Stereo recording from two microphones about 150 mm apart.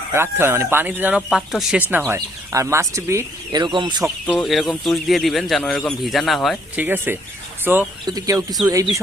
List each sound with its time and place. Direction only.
0.1 s speech: 15° right (ahead or behind)
2.0 s speech: 20° right (ahead or behind)
4.3 s speech: centre (ahead or behind)
6.7 s speech: 15° right (ahead or behind)
8.0 s speech: 25° right (ahead or behind)